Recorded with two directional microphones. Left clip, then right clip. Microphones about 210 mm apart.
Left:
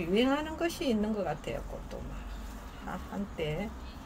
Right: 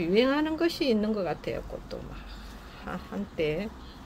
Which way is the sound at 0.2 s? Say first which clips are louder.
Right 5 dB; 40° right (ahead or behind).